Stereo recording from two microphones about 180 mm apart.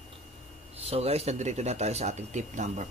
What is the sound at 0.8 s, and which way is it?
A man's voice, 35° right (ahead or behind).